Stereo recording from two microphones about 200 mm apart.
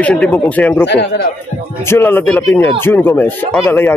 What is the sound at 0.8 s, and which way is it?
Speech, 60° left (ahead or behind).